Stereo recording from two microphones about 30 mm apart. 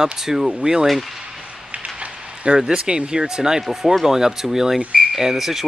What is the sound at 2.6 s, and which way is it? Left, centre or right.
Speech, right.